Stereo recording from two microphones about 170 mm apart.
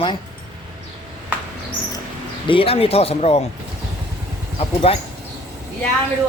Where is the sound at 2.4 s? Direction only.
35° left (ahead or behind).